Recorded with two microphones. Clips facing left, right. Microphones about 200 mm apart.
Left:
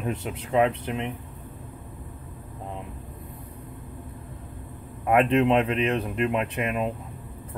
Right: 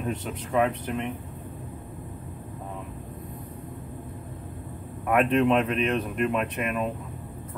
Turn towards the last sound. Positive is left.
turn(degrees=25)  # may be behind; listen again after turning